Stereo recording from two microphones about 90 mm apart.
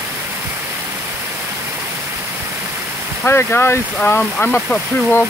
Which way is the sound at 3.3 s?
25° left (ahead or behind).